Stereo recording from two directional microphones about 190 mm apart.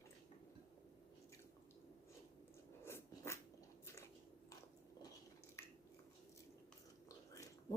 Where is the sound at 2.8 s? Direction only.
15° left (ahead or behind).